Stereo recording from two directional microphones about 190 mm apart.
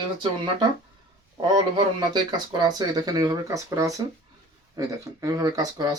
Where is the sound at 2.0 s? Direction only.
20° right (ahead or behind).